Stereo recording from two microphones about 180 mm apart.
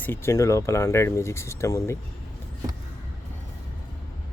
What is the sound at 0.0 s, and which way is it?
Speech, 10° left (ahead or behind).